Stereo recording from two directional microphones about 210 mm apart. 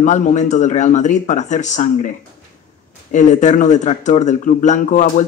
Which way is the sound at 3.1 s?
35° left (ahead or behind).